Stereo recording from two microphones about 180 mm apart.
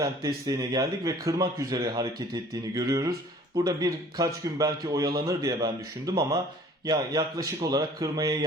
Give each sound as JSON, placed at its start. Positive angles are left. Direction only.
{"t": 0.4, "sound": "speech", "side_deg": -20}